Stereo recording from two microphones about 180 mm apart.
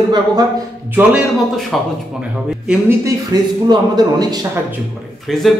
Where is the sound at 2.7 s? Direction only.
15° right (ahead or behind).